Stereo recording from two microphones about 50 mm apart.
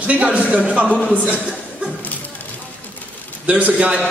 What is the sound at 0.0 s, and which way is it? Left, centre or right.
Speech, right.